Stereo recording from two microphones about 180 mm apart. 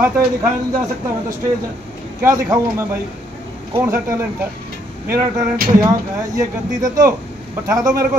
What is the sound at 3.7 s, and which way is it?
Speech, 15° right (ahead or behind).